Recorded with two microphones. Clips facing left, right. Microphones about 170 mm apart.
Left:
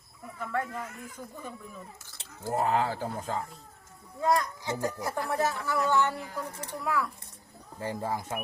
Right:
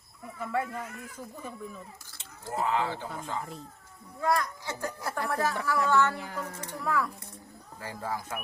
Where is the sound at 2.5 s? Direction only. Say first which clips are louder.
Left 2 dB; 40° left (ahead or behind).